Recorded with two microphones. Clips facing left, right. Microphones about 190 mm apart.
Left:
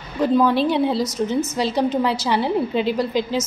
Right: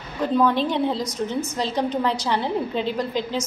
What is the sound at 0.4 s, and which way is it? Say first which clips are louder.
A woman's voice: left 1 dB; 5° left (ahead or behind).